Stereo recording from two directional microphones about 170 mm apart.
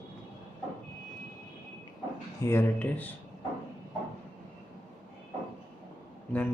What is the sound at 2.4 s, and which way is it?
Speech, 10° left (ahead or behind).